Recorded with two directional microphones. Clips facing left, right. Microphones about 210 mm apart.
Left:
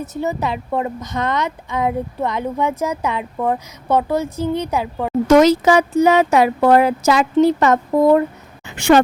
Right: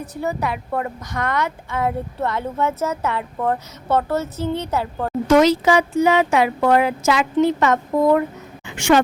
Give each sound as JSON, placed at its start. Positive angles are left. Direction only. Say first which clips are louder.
{"t": 0.0, "sound": "a woman's voice", "louder": "left 2 dB", "side_deg": 20}
{"t": 5.3, "sound": "speech", "louder": "left 3 dB", "side_deg": 45}
{"t": 8.6, "sound": "a sound", "louder": "left 3 dB", "side_deg": 35}